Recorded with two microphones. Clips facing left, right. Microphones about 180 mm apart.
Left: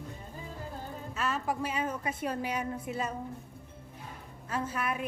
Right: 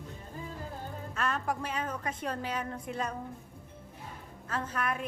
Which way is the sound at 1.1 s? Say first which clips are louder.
Even; 5° left (ahead or behind).